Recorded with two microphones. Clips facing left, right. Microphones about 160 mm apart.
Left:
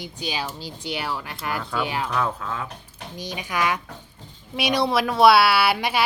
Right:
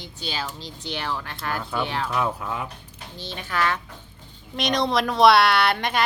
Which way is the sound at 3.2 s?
15° left (ahead or behind).